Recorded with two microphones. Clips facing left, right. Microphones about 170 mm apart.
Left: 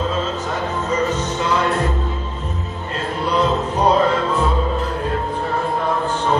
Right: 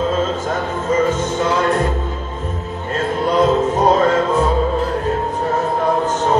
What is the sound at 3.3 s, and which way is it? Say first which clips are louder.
Music: right 4 dB; 45° right (ahead or behind).